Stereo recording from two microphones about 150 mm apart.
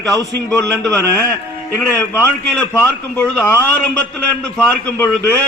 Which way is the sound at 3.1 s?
15° left (ahead or behind).